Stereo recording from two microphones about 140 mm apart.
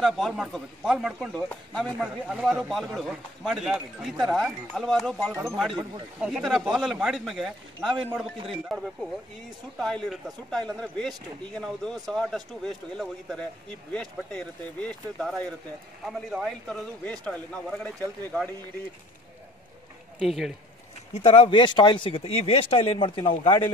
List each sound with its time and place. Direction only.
0.0 s a man's voice: centre (ahead or behind)
5.3 s speech: 20° right (ahead or behind)
6.2 s a man's voice: 5° right (ahead or behind)
20.2 s a man's voice: centre (ahead or behind)
21.1 s speech: 45° left (ahead or behind)